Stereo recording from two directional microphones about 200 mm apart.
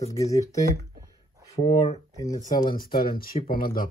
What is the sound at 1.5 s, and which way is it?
Speech, 35° left (ahead or behind).